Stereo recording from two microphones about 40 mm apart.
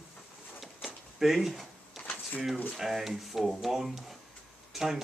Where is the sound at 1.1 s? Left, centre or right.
Centre.